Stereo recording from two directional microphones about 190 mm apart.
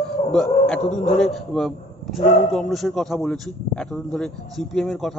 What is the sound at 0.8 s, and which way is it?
Speech, 35° left (ahead or behind).